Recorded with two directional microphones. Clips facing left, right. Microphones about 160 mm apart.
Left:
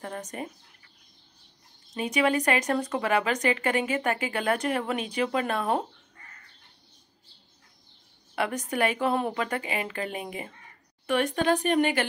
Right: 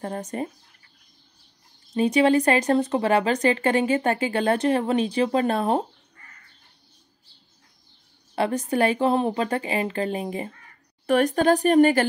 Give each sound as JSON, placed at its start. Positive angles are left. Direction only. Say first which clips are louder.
{"t": 0.0, "sound": "speech", "louder": "right 6 dB", "side_deg": -30}
{"t": 2.0, "sound": "speech", "louder": "right 7 dB", "side_deg": -30}
{"t": 8.4, "sound": "speech", "louder": "right 5 dB", "side_deg": -30}